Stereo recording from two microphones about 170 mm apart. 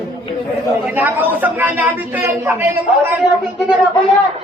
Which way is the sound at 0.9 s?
10° right (ahead or behind).